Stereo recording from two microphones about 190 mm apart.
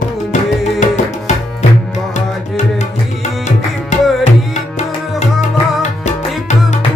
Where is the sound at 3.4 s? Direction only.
40° left (ahead or behind).